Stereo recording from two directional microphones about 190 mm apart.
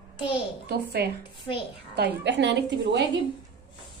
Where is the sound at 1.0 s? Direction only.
55° right (ahead or behind).